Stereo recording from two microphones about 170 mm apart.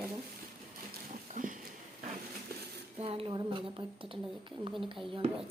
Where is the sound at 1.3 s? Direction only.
50° right (ahead or behind).